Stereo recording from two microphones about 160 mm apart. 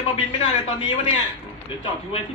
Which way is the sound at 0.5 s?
30° left (ahead or behind).